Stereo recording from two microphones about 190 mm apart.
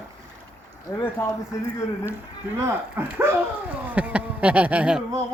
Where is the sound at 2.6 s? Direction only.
10° right (ahead or behind).